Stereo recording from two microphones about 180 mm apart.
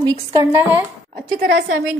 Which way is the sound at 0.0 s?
20° right (ahead or behind).